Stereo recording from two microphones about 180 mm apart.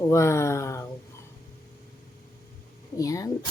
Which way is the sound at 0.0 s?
15° left (ahead or behind).